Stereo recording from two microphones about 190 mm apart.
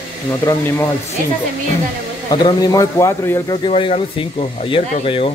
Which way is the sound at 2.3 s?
20° left (ahead or behind).